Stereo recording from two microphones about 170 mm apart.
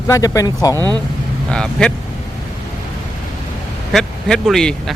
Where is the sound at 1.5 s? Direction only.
5° left (ahead or behind).